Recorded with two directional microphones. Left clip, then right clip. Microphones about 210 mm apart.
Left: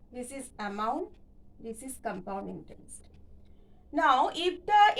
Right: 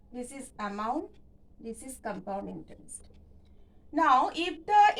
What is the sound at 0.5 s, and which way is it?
A woman's voice, 15° left (ahead or behind).